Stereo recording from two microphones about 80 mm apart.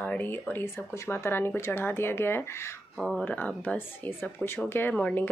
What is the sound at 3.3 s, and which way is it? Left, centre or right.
Speech, centre.